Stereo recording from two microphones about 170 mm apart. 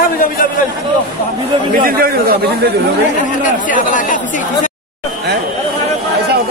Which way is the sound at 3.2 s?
50° left (ahead or behind).